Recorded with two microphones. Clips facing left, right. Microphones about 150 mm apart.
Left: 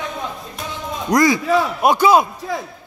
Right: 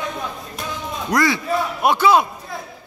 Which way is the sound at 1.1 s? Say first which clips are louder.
Left 5 dB; 15° left (ahead or behind).